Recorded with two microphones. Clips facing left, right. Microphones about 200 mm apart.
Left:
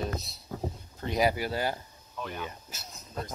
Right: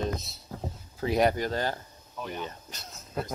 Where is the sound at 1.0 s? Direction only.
Centre (ahead or behind).